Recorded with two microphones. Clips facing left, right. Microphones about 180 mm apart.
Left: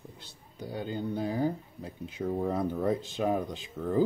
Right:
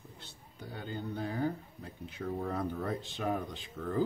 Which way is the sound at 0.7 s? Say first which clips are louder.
Left 6 dB; 15° left (ahead or behind).